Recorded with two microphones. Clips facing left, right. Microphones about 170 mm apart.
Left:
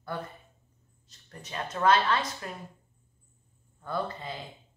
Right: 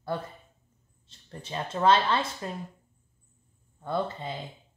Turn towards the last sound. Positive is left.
turn(degrees=-25)  # may be behind; listen again after turning